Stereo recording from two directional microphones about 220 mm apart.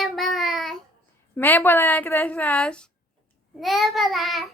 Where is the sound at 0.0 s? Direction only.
Centre (ahead or behind).